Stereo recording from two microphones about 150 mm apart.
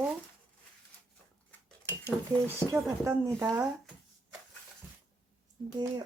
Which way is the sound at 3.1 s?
20° right (ahead or behind).